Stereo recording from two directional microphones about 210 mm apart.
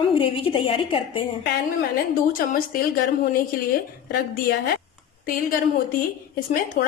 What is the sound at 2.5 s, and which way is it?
Speech, 40° left (ahead or behind).